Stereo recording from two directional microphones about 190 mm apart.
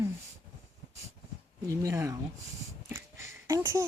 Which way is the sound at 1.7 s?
15° right (ahead or behind).